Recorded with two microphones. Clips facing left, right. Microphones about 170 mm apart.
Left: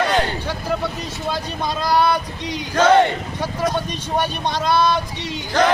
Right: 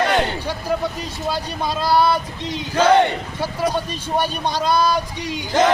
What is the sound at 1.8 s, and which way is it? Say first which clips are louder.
Female singing: right 1 dB; 5° right (ahead or behind).